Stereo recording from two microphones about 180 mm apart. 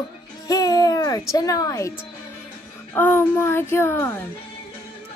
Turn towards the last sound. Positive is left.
turn(degrees=10)  # may be behind; listen again after turning